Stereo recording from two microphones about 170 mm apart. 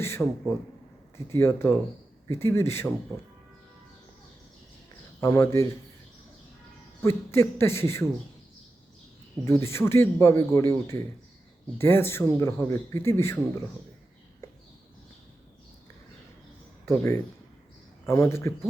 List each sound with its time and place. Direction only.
0.0 s speech: 15° left (ahead or behind)
5.2 s speech: 20° left (ahead or behind)
7.0 s speech: 15° left (ahead or behind)
9.5 s speech: 15° left (ahead or behind)
16.8 s speech: 15° left (ahead or behind)